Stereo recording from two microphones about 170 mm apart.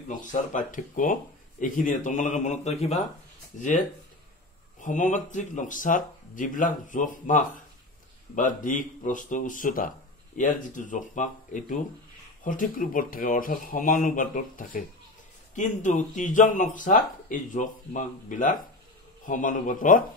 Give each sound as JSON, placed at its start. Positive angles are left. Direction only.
{"t": 0.2, "sound": "speech", "side_deg": 50}